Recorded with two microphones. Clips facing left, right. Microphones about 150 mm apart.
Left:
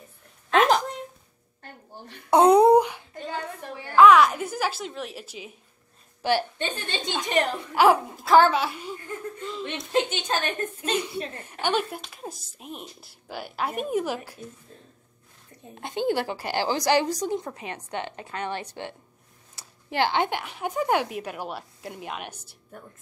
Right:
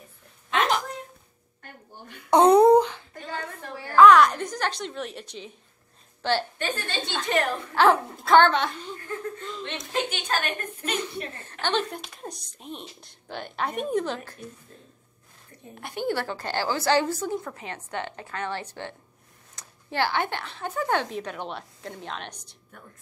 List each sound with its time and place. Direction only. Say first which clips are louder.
2.3 s a sound: even; 10° left (ahead or behind)
3.9 s a woman's voice: even; 5° left (ahead or behind)
10.0 s a woman's voice: left 1 dB; 25° left (ahead or behind)
10.8 s a woman's voice: left 1 dB; 10° left (ahead or behind)
15.7 s a woman's voice: left 3 dB; 20° left (ahead or behind)